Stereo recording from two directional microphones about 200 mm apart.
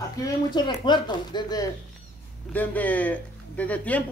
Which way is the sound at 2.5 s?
10° left (ahead or behind).